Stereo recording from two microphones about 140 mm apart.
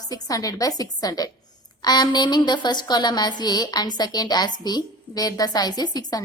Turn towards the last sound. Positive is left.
turn(degrees=30)  # may be behind; listen again after turning